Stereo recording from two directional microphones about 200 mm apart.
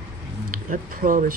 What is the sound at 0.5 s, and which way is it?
Speech, 45° right (ahead or behind).